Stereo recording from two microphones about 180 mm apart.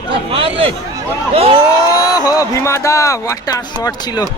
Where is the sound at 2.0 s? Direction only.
20° left (ahead or behind).